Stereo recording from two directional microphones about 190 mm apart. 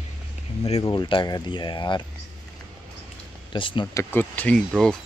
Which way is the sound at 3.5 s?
25° left (ahead or behind).